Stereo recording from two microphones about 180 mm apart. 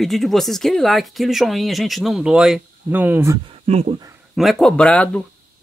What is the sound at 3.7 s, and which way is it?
Speech, 35° right (ahead or behind).